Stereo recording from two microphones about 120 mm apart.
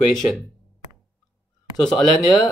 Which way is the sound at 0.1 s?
Centre (ahead or behind).